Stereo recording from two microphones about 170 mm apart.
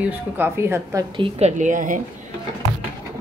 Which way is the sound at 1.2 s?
35° right (ahead or behind).